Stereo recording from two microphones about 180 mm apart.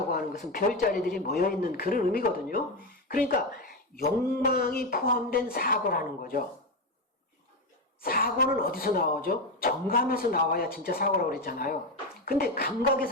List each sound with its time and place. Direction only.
0.1 s speech: 55° left (ahead or behind)
8.0 s speech: 55° left (ahead or behind)